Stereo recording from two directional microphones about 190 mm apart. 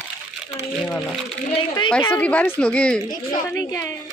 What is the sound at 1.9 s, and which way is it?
A woman's voice, 5° left (ahead or behind).